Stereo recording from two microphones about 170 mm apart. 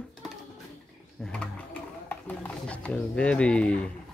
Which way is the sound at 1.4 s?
10° left (ahead or behind).